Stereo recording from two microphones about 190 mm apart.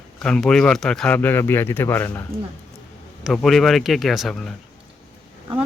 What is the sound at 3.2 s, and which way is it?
Speech, centre (ahead or behind).